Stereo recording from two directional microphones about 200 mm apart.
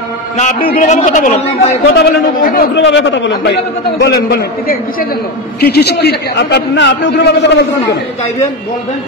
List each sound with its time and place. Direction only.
0.4 s a man's voice: 40° left (ahead or behind)
1.9 s a man's voice: 45° left (ahead or behind)
2.7 s a man's voice: 65° left (ahead or behind)